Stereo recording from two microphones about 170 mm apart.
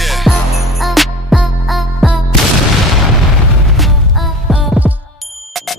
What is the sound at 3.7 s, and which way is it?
Music, centre (ahead or behind).